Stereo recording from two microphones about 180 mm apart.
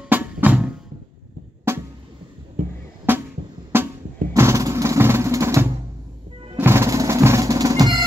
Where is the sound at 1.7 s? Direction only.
15° right (ahead or behind).